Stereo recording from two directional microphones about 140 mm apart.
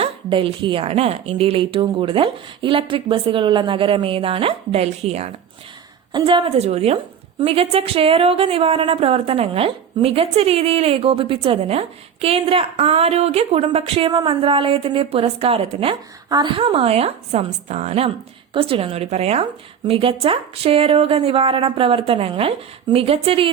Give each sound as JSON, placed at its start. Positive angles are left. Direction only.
{"t": 0.0, "sound": "a woman's voice", "side_deg": -40}
{"t": 6.1, "sound": "a woman's voice", "side_deg": -35}